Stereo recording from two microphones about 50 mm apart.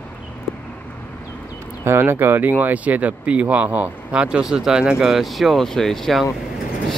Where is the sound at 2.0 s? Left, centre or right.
Right.